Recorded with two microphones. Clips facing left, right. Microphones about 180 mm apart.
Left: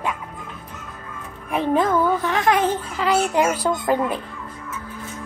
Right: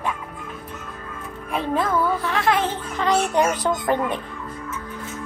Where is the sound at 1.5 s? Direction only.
15° left (ahead or behind).